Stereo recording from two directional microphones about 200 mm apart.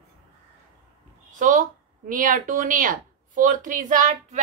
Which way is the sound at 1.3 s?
40° right (ahead or behind).